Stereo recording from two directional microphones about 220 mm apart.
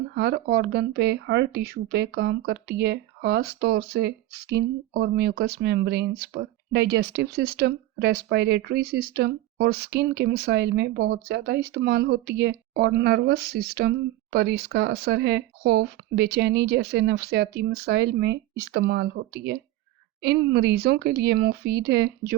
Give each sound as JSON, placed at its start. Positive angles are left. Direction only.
{"t": 0.1, "sound": "speech", "side_deg": -50}